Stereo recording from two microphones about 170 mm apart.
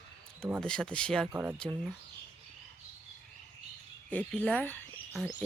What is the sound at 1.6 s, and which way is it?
Speech, 5° left (ahead or behind).